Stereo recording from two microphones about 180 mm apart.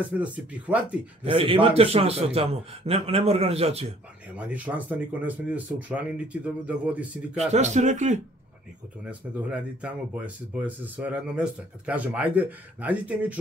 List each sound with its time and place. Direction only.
0.0 s speech: 10° right (ahead or behind)
1.2 s a man's voice: 30° right (ahead or behind)
4.4 s speech: 10° right (ahead or behind)
7.3 s a man's voice: 40° right (ahead or behind)
9.0 s speech: 5° right (ahead or behind)